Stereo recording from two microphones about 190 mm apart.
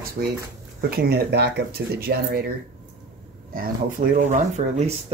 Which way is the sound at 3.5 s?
45° right (ahead or behind).